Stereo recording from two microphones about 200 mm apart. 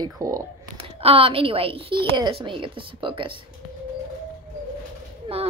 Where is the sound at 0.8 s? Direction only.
30° right (ahead or behind).